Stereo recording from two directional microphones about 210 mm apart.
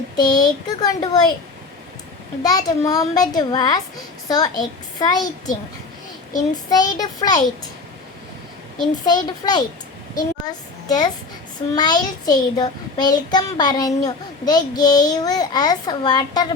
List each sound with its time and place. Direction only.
0.2 s a child's voice: 20° left (ahead or behind)
2.4 s a child's voice: 20° left (ahead or behind)
6.7 s a child's voice: 20° left (ahead or behind)
9.0 s a child's voice: 20° left (ahead or behind)